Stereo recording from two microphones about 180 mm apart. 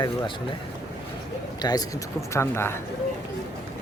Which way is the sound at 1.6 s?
25° left (ahead or behind).